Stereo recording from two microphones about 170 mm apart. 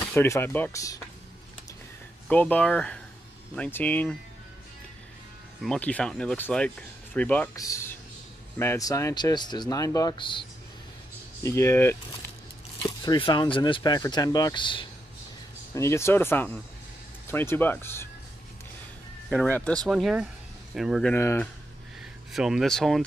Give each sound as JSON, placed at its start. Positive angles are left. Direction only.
{"t": 0.0, "sound": "speech", "side_deg": 15}
{"t": 2.2, "sound": "speech", "side_deg": 10}
{"t": 5.6, "sound": "speech", "side_deg": 5}
{"t": 7.5, "sound": "speech", "side_deg": 20}
{"t": 11.4, "sound": "speech", "side_deg": 15}
{"t": 12.8, "sound": "speech", "side_deg": 25}
{"t": 15.7, "sound": "speech", "side_deg": 15}
{"t": 19.3, "sound": "speech", "side_deg": 5}
{"t": 21.1, "sound": "speech", "side_deg": 15}
{"t": 22.3, "sound": "speech", "side_deg": 0}